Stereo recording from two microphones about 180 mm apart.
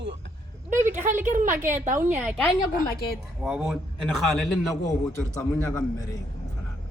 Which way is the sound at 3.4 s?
5° right (ahead or behind).